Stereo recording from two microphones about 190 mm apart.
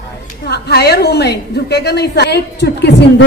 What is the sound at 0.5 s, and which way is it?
A woman's voice, 60° left (ahead or behind).